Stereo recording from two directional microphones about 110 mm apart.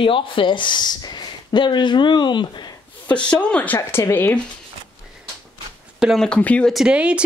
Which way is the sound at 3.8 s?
25° left (ahead or behind).